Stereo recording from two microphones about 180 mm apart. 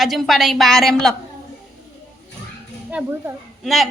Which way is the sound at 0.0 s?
Centre (ahead or behind).